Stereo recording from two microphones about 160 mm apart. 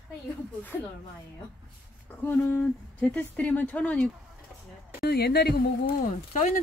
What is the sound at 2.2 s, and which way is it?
Speech, 10° left (ahead or behind).